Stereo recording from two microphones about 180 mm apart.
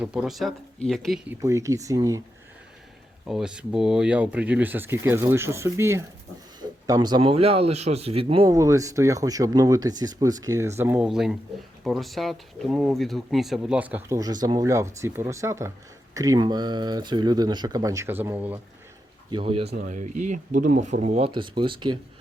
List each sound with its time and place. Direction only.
0.0 s speech: 5° right (ahead or behind)
1.3 s speech: 15° right (ahead or behind)
3.2 s speech: 5° right (ahead or behind); by 8.5 s 30° right (ahead or behind)
8.5 s speech: 15° right (ahead or behind)
19.3 s speech: 30° right (ahead or behind)
19.7 s speech: 50° right (ahead or behind)
21.2 s speech: 25° right (ahead or behind)